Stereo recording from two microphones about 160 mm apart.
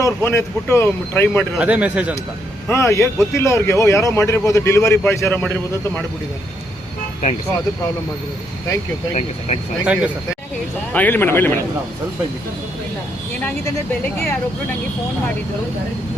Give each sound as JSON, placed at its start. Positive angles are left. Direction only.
{"t": 0.0, "sound": "a man's voice", "side_deg": 15}
{"t": 1.5, "sound": "speech", "side_deg": -10}
{"t": 2.6, "sound": "a man's voice", "side_deg": 15}
{"t": 9.8, "sound": "speech", "side_deg": -5}
{"t": 10.9, "sound": "a man's voice", "side_deg": 10}